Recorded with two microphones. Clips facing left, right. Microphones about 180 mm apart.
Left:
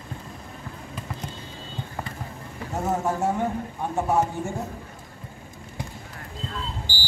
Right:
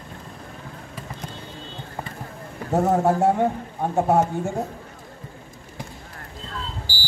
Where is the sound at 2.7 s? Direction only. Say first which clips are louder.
Right 7 dB; 65° right (ahead or behind).